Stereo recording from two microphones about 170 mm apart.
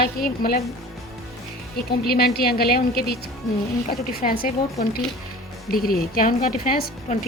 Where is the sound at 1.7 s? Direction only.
65° left (ahead or behind).